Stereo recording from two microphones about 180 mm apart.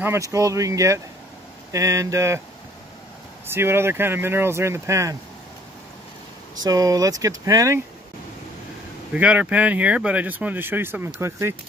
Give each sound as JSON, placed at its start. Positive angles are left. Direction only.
{"t": 0.0, "sound": "speech", "side_deg": -15}
{"t": 3.4, "sound": "speech", "side_deg": -15}
{"t": 6.6, "sound": "speech", "side_deg": -20}
{"t": 9.1, "sound": "speech", "side_deg": -5}